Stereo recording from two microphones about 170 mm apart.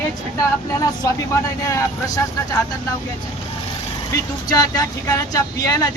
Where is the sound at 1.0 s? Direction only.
20° left (ahead or behind).